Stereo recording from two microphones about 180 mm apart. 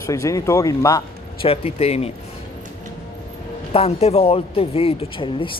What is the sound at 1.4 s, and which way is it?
Speech, 35° left (ahead or behind).